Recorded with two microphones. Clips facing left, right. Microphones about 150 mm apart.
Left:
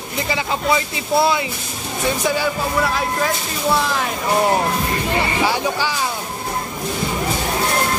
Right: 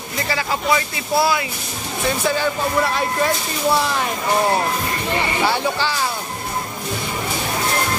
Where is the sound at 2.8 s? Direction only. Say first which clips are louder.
Right 1 dB; centre (ahead or behind).